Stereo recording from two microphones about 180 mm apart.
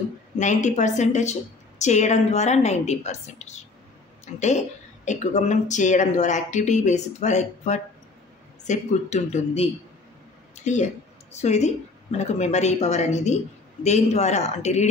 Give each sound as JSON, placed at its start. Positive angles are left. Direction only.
{"t": 0.4, "sound": "a woman's voice", "side_deg": 45}
{"t": 10.5, "sound": "a sound", "side_deg": 40}
{"t": 11.3, "sound": "a woman's voice", "side_deg": 40}